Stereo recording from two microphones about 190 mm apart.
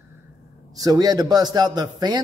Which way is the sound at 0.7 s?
20° right (ahead or behind).